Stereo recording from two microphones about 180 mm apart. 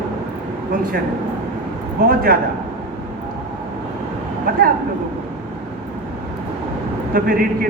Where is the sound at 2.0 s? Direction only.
55° right (ahead or behind).